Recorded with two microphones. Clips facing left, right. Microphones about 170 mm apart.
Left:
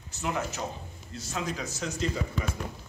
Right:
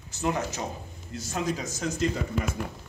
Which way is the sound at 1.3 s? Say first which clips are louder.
Right 3 dB; 45° right (ahead or behind).